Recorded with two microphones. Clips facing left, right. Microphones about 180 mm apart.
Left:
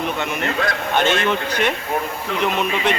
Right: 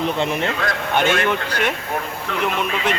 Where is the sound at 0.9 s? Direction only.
10° right (ahead or behind).